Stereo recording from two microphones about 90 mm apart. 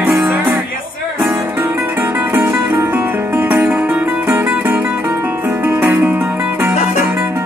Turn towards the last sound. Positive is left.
turn(degrees=-20)  # may be behind; listen again after turning